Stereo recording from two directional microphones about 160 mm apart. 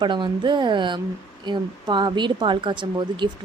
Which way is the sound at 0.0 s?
30° right (ahead or behind).